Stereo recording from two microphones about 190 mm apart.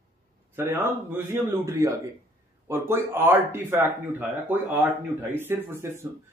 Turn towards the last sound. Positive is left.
turn(degrees=-15)  # may be behind; listen again after turning